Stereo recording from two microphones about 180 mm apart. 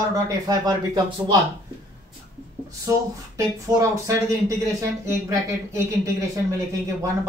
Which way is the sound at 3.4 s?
20° right (ahead or behind).